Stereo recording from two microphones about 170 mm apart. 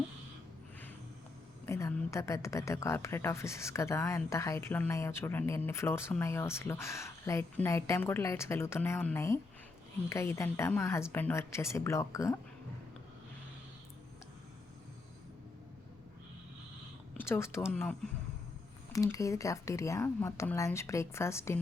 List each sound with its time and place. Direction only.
1.6 s a woman's voice: 15° left (ahead or behind)
17.2 s a woman's voice: 15° left (ahead or behind)
18.9 s a woman's voice: 20° left (ahead or behind)